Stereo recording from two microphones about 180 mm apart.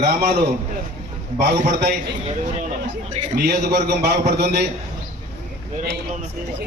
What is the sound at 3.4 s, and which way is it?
A man's voice, 65° right (ahead or behind).